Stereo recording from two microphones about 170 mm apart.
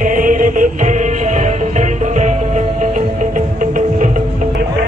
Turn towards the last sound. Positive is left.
turn(degrees=-50)  # may be behind; listen again after turning